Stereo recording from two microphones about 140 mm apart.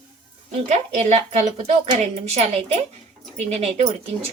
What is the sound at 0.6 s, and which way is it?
A woman's voice, 55° right (ahead or behind).